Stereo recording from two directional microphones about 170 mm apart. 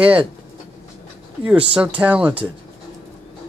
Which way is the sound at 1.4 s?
5° right (ahead or behind).